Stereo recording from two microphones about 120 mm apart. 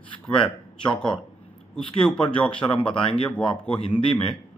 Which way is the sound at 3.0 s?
45° left (ahead or behind).